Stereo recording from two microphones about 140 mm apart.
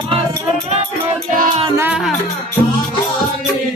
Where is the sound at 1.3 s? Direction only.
65° right (ahead or behind).